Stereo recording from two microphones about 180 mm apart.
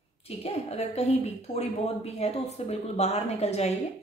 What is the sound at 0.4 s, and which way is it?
A woman's voice, 35° left (ahead or behind).